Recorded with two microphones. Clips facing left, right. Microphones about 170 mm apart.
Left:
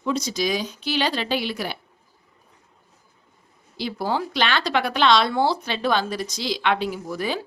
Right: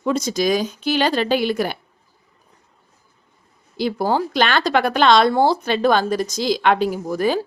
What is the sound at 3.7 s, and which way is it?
Speech, 45° right (ahead or behind).